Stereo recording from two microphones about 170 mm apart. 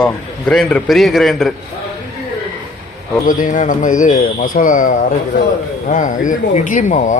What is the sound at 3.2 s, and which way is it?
Speech, 50° left (ahead or behind).